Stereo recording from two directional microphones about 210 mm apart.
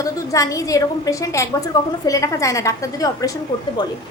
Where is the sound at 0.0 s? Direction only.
15° left (ahead or behind).